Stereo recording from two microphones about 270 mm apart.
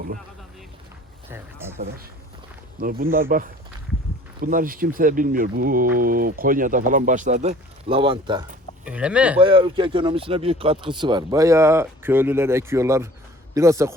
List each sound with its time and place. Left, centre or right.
1.3 s speech: centre
2.8 s speech: right
8.8 s speech: centre
9.4 s a man's voice: centre